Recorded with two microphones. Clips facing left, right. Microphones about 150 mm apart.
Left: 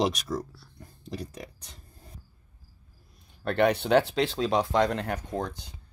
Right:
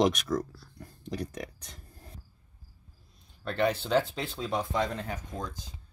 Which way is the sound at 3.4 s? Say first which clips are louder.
Left 5 dB; 65° left (ahead or behind).